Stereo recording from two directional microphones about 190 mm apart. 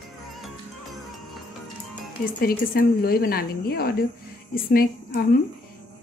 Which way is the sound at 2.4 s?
50° left (ahead or behind).